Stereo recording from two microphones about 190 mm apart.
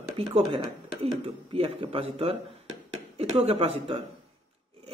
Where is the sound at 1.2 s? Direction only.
30° right (ahead or behind).